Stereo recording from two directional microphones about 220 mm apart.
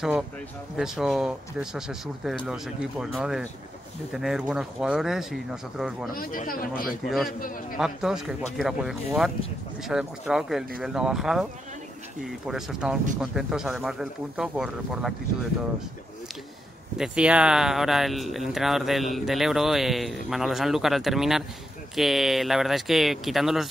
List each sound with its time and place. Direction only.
0.7 s speech: centre (ahead or behind)
6.1 s speech: 40° left (ahead or behind)
7.1 s speech: centre (ahead or behind)
12.4 s speech: centre (ahead or behind)
16.9 s speech: 5° right (ahead or behind)